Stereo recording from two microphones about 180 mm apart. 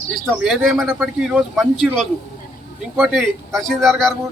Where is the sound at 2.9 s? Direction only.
Centre (ahead or behind).